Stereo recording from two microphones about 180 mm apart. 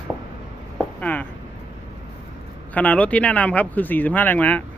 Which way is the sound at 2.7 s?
10° left (ahead or behind).